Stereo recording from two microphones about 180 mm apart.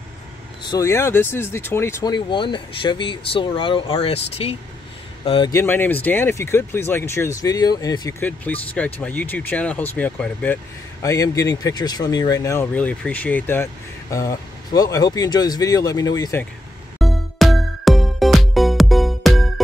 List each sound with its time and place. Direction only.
0.7 s speech: 15° left (ahead or behind)
2.1 s speech: 25° left (ahead or behind)
5.5 s speech: 15° left (ahead or behind)
8.2 s speech: 10° left (ahead or behind)
17.0 s music: centre (ahead or behind)